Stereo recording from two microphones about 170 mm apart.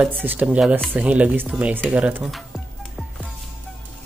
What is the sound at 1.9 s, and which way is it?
Music, 10° right (ahead or behind).